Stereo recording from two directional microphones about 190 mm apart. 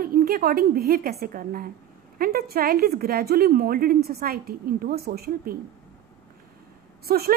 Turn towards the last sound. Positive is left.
turn(degrees=-55)  # may be behind; listen again after turning